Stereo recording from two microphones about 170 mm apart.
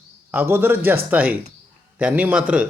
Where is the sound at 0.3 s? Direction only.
10° right (ahead or behind).